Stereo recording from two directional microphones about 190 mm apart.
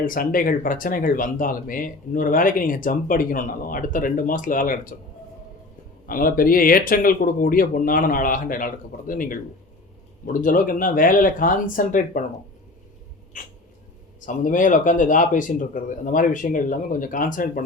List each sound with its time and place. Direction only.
0.0 s speech: 45° left (ahead or behind)
6.1 s speech: 50° left (ahead or behind)
13.3 s speech: 45° left (ahead or behind)